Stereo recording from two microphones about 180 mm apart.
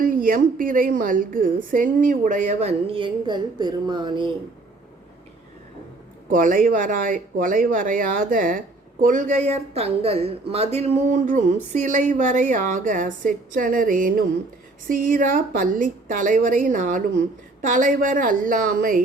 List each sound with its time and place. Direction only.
0.0 s speech: 50° right (ahead or behind); by 4.3 s 25° right (ahead or behind)
6.2 s speech: 50° right (ahead or behind)